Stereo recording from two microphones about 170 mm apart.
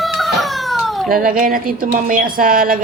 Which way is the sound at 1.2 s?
55° right (ahead or behind).